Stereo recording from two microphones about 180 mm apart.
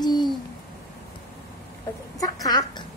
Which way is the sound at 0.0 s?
20° left (ahead or behind).